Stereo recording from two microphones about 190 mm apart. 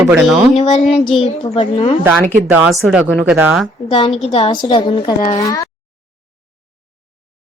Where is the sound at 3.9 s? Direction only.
30° left (ahead or behind).